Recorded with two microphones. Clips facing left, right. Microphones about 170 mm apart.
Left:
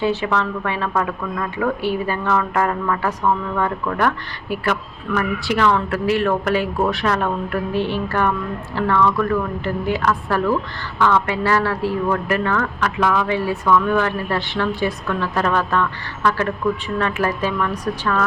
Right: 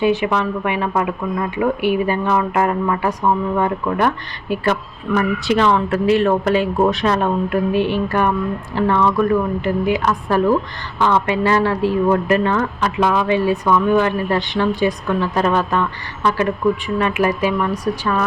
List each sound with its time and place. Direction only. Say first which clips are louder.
0.0 s speech: right 3 dB; 15° right (ahead or behind)